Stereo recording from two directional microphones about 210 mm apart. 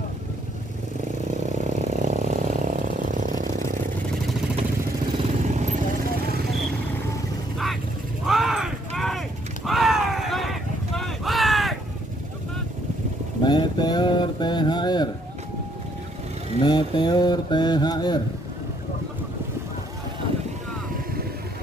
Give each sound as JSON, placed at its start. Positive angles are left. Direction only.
{"t": 1.9, "sound": "vehicle", "side_deg": -35}
{"t": 5.1, "sound": "vehicle", "side_deg": -30}
{"t": 8.3, "sound": "artillery fire", "side_deg": 0}
{"t": 9.7, "sound": "a sound", "side_deg": 0}
{"t": 13.4, "sound": "mantra", "side_deg": 20}
{"t": 16.6, "sound": "mantra", "side_deg": 20}